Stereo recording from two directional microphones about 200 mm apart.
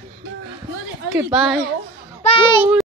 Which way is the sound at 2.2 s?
30° left (ahead or behind).